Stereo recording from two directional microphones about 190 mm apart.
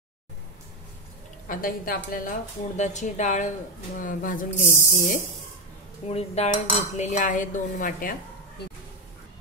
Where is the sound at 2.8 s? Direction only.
40° left (ahead or behind).